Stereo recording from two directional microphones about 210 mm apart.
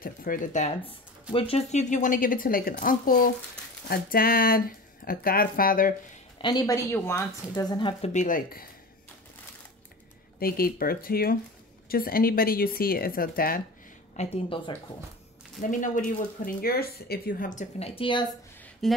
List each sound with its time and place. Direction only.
0.0 s speech: 40° left (ahead or behind)
6.3 s speech: 20° left (ahead or behind)
8.1 s speech: 35° left (ahead or behind)
10.4 s speech: 45° left (ahead or behind)
14.1 s speech: 30° left (ahead or behind)
15.6 s speech: 40° left (ahead or behind)
18.8 s a sound: centre (ahead or behind)